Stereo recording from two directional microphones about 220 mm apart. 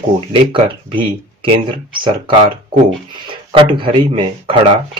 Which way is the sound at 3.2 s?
25° right (ahead or behind).